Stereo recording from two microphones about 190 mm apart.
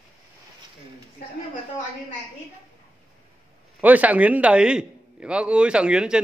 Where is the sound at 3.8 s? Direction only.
10° right (ahead or behind).